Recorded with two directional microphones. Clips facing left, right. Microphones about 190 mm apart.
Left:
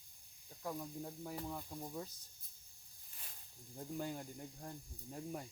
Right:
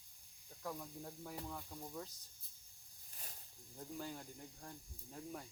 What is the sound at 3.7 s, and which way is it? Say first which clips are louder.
Speech: left 4 dB; 20° left (ahead or behind).